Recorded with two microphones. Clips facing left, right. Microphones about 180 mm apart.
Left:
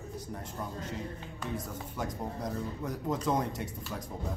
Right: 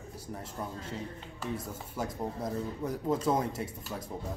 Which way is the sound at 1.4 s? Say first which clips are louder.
Right 1 dB; 5° right (ahead or behind).